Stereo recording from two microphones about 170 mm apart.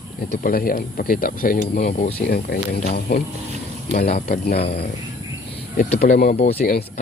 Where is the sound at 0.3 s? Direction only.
55° left (ahead or behind).